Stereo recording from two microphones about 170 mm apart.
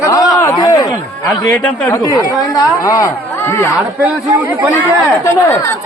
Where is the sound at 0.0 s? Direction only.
20° left (ahead or behind).